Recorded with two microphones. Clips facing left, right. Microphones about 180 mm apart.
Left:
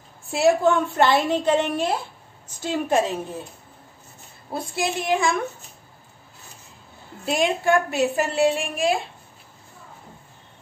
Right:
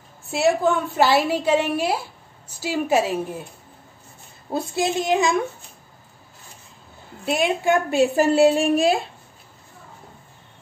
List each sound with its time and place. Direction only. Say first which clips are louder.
0.3 s a woman's voice: left 1 dB; centre (ahead or behind)
4.5 s a woman's voice: right 3 dB; 25° right (ahead or behind)
7.2 s a woman's voice: right 1 dB; centre (ahead or behind)
7.6 s a woman's voice: right 2 dB; 25° right (ahead or behind)